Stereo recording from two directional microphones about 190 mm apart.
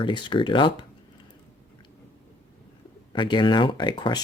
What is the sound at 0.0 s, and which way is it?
Speech, 25° left (ahead or behind).